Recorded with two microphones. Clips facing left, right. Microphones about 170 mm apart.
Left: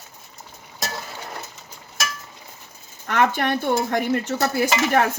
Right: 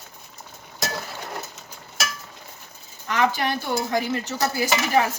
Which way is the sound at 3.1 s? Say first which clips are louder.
Left 2 dB; 55° left (ahead or behind).